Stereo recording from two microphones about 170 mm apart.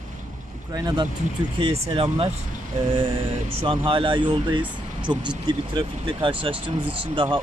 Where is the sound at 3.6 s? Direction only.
30° right (ahead or behind).